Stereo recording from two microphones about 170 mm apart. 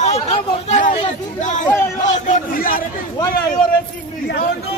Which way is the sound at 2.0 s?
45° left (ahead or behind).